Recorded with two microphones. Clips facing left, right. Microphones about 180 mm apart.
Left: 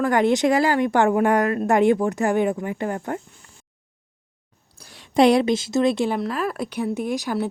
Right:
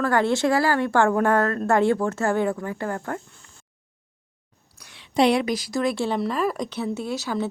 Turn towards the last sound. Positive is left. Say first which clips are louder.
# left 3 dB
turn(degrees=15)  # may be behind; listen again after turning